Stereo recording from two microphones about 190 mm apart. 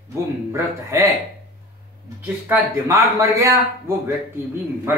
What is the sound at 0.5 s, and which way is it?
Speech, 15° right (ahead or behind).